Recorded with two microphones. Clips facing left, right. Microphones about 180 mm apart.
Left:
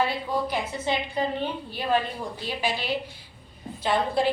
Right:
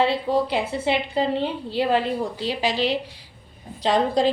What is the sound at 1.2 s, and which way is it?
A woman's voice, 85° right.